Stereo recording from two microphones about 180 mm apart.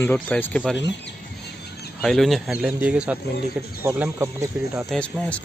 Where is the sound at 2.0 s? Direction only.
Centre (ahead or behind).